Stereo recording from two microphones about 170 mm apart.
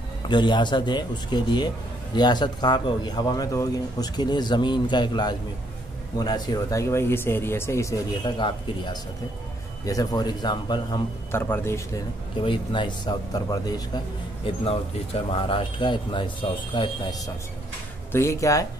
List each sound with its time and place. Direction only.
0.3 s speech: 25° left (ahead or behind)
11.3 s speech: 15° left (ahead or behind)
12.4 s speech: 25° left (ahead or behind)
18.1 s speech: 15° left (ahead or behind)